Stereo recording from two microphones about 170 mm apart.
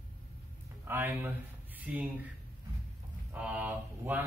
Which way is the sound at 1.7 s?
10° right (ahead or behind).